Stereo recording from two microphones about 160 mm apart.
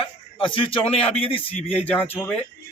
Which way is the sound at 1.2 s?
35° left (ahead or behind).